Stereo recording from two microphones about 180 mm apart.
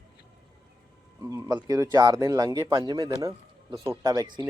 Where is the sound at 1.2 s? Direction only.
15° right (ahead or behind).